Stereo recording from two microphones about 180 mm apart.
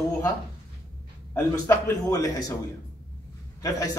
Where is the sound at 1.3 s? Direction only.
15° left (ahead or behind).